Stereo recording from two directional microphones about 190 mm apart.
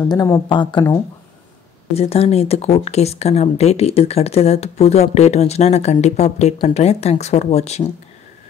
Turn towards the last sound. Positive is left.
turn(degrees=35)  # may be behind; listen again after turning